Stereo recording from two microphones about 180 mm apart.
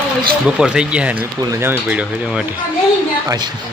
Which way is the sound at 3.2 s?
25° right (ahead or behind).